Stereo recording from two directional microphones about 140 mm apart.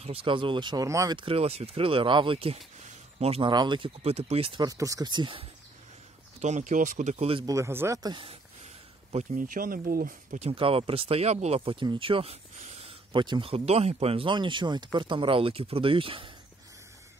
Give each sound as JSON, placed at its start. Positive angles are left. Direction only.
{"t": 0.0, "sound": "speech", "side_deg": -40}
{"t": 1.1, "sound": "speech", "side_deg": -40}
{"t": 3.5, "sound": "speech", "side_deg": -35}
{"t": 4.6, "sound": "speech", "side_deg": -25}
{"t": 6.4, "sound": "speech", "side_deg": -60}
{"t": 7.3, "sound": "speech", "side_deg": -25}
{"t": 8.1, "sound": "speech", "side_deg": -35}
{"t": 9.1, "sound": "speech", "side_deg": -65}
{"t": 10.4, "sound": "speech", "side_deg": -40}
{"t": 13.1, "sound": "speech", "side_deg": -35}